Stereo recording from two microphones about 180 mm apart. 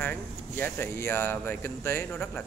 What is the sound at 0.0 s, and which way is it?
Speech, 10° left (ahead or behind).